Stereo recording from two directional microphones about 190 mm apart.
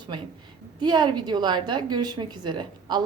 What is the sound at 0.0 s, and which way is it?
A woman's voice, 25° right (ahead or behind).